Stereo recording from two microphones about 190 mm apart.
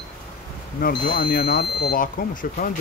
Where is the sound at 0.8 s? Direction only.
55° left (ahead or behind).